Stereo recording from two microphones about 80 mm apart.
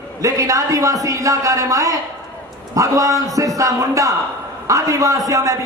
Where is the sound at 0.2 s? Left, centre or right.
Right.